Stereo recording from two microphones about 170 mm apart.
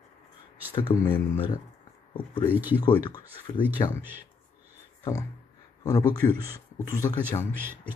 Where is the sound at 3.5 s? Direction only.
25° left (ahead or behind).